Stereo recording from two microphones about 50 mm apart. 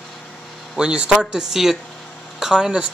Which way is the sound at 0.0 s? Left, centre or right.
Centre.